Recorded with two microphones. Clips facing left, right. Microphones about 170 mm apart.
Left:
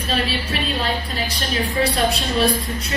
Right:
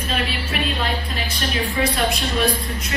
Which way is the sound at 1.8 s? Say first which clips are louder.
Left 1 dB; 35° left (ahead or behind).